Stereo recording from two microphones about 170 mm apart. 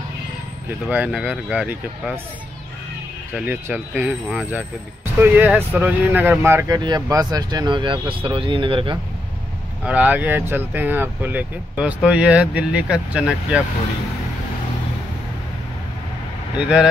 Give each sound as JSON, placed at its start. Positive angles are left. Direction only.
{"t": 0.8, "sound": "speech", "side_deg": -10}
{"t": 3.3, "sound": "speech", "side_deg": -10}
{"t": 9.8, "sound": "speech", "side_deg": -10}
{"t": 16.5, "sound": "speech", "side_deg": -5}